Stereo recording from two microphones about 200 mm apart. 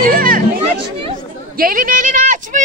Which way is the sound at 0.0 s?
45° right (ahead or behind).